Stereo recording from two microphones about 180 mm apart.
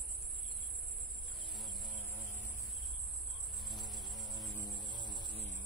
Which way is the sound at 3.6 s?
Centre (ahead or behind).